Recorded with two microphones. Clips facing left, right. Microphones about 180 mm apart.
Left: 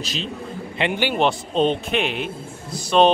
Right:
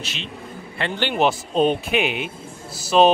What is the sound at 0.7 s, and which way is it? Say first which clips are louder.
Speech: left 3 dB; 15° left (ahead or behind).